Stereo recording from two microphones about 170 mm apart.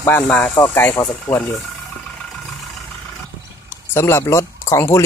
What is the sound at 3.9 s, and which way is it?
Speech, 15° left (ahead or behind).